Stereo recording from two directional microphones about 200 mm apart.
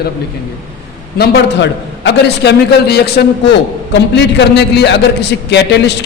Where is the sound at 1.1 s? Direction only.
55° left (ahead or behind).